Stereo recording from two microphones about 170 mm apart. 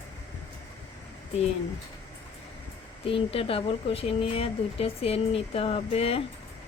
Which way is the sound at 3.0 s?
35° left (ahead or behind).